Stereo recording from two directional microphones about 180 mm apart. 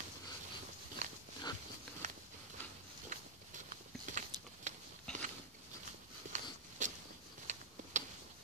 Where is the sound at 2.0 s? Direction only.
45° right (ahead or behind).